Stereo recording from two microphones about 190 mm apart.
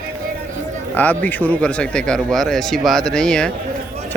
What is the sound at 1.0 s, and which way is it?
A man's voice, 10° left (ahead or behind).